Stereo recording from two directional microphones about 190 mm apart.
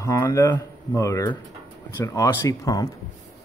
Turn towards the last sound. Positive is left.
turn(degrees=20)  # may be behind; listen again after turning